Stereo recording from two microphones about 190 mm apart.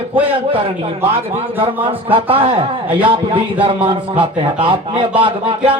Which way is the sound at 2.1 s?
30° right (ahead or behind).